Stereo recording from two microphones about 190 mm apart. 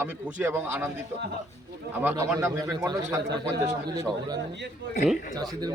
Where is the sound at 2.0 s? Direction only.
15° right (ahead or behind).